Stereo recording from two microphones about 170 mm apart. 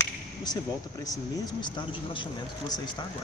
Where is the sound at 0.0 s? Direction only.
25° left (ahead or behind).